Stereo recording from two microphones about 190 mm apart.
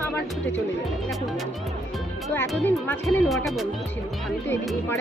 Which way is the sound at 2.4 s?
5° left (ahead or behind).